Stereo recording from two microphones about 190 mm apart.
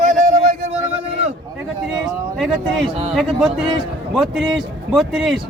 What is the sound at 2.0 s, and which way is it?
Speech, centre (ahead or behind).